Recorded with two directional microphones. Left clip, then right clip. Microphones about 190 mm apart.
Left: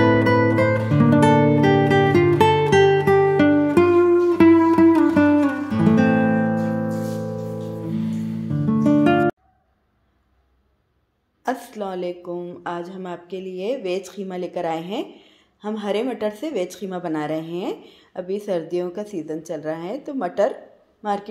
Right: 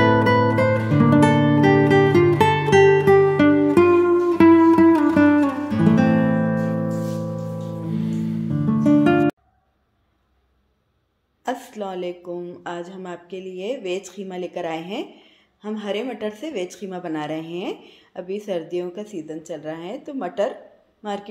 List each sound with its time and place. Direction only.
0.0 s music: centre (ahead or behind)
11.4 s a woman's voice: 10° left (ahead or behind)